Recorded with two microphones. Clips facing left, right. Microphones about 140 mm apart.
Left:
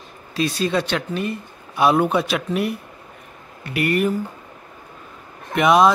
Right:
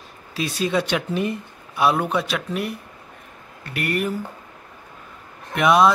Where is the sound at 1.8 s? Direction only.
Centre (ahead or behind).